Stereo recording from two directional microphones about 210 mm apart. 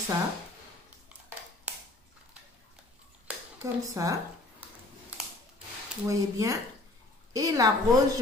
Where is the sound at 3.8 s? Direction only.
15° right (ahead or behind).